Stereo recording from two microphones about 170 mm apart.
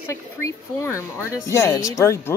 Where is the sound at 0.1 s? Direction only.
15° left (ahead or behind).